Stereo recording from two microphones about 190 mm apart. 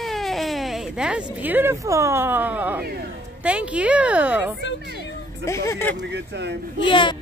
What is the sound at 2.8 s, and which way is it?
Speech, 55° right (ahead or behind).